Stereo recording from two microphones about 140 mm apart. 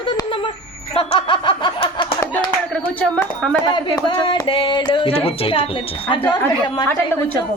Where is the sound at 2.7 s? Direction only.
5° left (ahead or behind).